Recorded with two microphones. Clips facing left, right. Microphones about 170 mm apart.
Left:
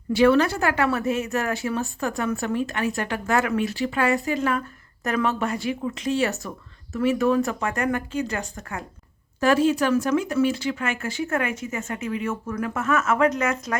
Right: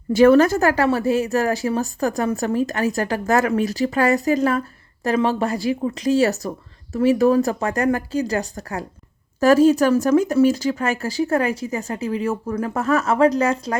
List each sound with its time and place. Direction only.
0.1 s a woman's voice: 45° right (ahead or behind)